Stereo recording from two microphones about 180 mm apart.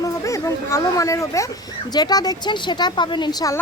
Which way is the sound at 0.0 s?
15° left (ahead or behind).